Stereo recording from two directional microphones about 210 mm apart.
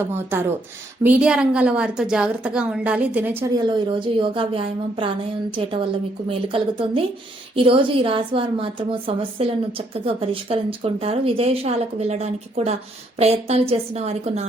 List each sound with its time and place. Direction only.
0.0 s a woman's voice: 10° right (ahead or behind)
3.5 s a woman's voice: 20° right (ahead or behind)